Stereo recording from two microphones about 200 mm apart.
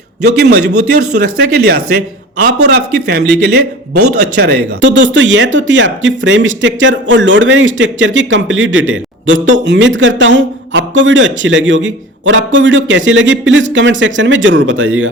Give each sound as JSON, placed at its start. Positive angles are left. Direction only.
{"t": 0.3, "sound": "a man's voice", "side_deg": -55}